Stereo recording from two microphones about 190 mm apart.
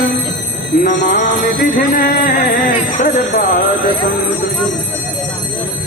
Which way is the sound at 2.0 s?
45° left (ahead or behind).